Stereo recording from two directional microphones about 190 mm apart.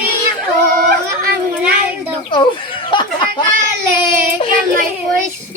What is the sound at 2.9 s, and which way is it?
Speech, 25° left (ahead or behind).